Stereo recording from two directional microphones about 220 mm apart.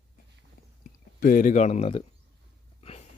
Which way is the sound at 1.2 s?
40° left (ahead or behind).